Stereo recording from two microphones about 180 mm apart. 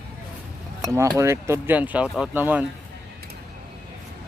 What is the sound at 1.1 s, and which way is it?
Speech, 15° right (ahead or behind).